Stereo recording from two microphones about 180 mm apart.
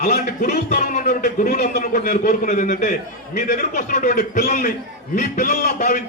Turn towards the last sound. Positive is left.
turn(degrees=45)  # may be behind; listen again after turning